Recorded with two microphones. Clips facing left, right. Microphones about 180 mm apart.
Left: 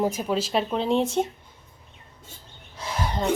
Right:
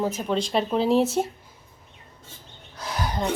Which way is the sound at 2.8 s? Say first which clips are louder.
Even; centre (ahead or behind).